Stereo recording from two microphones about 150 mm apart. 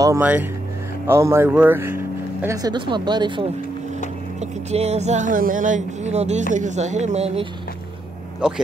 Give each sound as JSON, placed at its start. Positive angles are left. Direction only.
{"t": 0.2, "sound": "speech", "side_deg": -10}
{"t": 2.4, "sound": "speech", "side_deg": -25}
{"t": 4.4, "sound": "speech", "side_deg": -45}
{"t": 8.4, "sound": "speech", "side_deg": -5}